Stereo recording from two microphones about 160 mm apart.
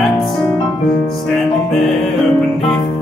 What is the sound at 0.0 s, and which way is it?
Music, centre (ahead or behind).